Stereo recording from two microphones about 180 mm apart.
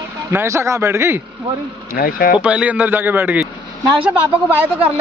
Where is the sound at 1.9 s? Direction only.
55° left (ahead or behind).